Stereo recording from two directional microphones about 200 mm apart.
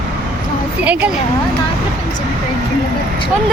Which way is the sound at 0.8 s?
5° right (ahead or behind).